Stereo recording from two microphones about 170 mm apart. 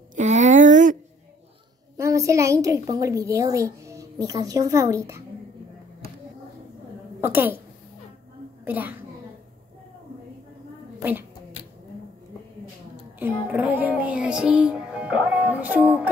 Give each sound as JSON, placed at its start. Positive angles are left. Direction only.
{"t": 0.1, "sound": "a sound", "side_deg": -45}
{"t": 2.0, "sound": "a woman's voice", "side_deg": -20}
{"t": 7.2, "sound": "music", "side_deg": -10}
{"t": 8.6, "sound": "a woman's voice", "side_deg": -10}
{"t": 11.0, "sound": "a woman's voice", "side_deg": -10}
{"t": 13.2, "sound": "music", "side_deg": -10}